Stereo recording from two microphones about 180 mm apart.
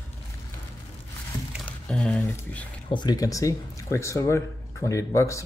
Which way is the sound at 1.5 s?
5° left (ahead or behind).